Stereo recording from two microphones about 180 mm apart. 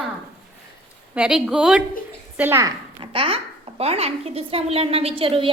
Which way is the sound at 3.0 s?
30° right (ahead or behind).